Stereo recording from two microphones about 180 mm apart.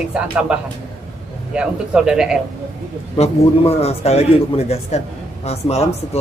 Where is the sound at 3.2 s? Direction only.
35° left (ahead or behind).